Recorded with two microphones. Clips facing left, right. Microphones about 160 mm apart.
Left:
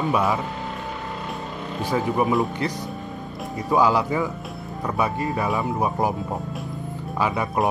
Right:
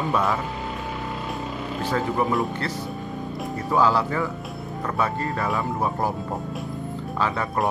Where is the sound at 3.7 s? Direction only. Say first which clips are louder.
Left 2 dB; 15° left (ahead or behind).